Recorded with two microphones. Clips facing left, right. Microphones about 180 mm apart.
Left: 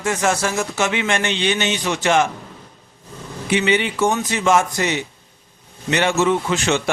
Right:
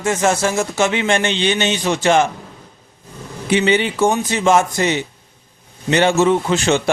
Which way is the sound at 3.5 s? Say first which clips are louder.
Right 3 dB; 30° right (ahead or behind).